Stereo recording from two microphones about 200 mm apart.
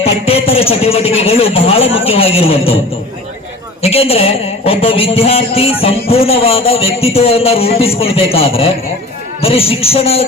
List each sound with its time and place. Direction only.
0.0 s speech: 30° left (ahead or behind)
3.8 s speech: 30° left (ahead or behind)